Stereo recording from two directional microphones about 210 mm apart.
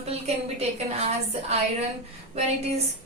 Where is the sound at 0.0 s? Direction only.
30° right (ahead or behind).